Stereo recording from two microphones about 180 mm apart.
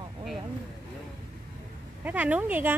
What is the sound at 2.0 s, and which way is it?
Speech, 10° right (ahead or behind).